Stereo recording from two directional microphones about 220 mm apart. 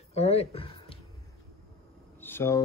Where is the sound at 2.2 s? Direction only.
10° left (ahead or behind).